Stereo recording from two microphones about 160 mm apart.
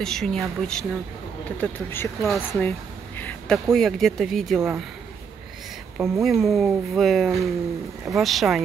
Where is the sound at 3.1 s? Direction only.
10° left (ahead or behind).